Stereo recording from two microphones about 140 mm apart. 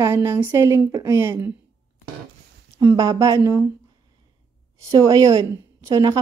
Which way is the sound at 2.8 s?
25° right (ahead or behind).